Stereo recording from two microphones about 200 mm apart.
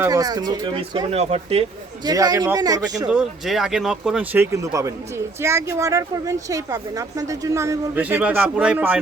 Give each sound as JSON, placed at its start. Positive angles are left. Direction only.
{"t": 0.0, "sound": "speech", "side_deg": -20}
{"t": 2.0, "sound": "speech", "side_deg": -20}
{"t": 3.1, "sound": "speech", "side_deg": -5}